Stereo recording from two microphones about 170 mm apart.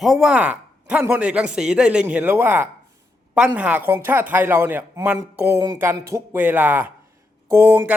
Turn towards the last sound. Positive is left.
turn(degrees=-15)  # may be behind; listen again after turning